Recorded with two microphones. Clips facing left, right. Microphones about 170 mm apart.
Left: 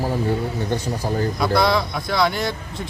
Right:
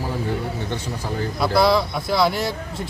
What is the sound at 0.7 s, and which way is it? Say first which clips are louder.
Speech: left 4 dB; 45° left (ahead or behind).